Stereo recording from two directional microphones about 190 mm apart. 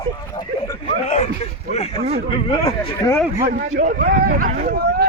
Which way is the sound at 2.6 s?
15° left (ahead or behind).